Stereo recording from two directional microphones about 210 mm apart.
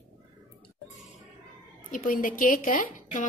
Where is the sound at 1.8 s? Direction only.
40° left (ahead or behind).